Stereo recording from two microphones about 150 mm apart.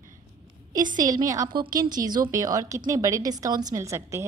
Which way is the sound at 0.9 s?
25° right (ahead or behind).